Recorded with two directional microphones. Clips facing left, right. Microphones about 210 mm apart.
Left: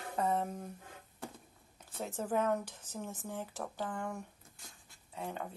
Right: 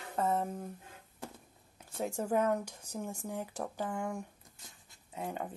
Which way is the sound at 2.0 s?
10° right (ahead or behind).